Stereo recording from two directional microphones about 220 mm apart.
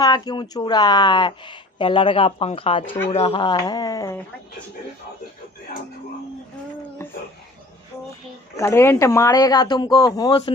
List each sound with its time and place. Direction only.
0.0 s speech: 20° left (ahead or behind)
7.0 s a sound: 10° left (ahead or behind)
8.5 s speech: 10° left (ahead or behind)